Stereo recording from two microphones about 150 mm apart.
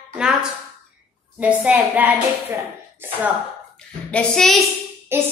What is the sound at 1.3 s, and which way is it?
A woman's voice, 10° right (ahead or behind).